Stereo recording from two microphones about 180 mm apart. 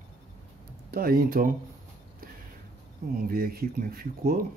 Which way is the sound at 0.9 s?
55° right (ahead or behind).